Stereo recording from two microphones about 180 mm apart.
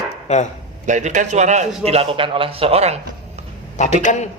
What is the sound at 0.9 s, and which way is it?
A man's voice, 40° right (ahead or behind).